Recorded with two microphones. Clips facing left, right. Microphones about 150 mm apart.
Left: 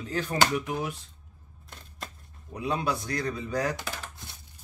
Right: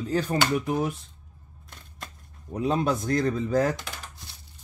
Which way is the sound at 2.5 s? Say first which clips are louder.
Right 5 dB; 40° right (ahead or behind).